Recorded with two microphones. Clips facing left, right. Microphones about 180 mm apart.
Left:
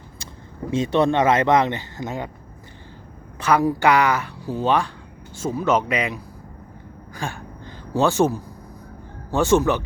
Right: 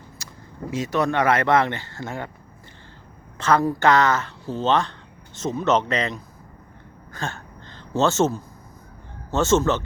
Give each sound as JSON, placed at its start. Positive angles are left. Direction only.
{"t": 0.2, "sound": "vehicle", "side_deg": 30}
{"t": 0.7, "sound": "speech", "side_deg": 25}
{"t": 3.3, "sound": "speech", "side_deg": 10}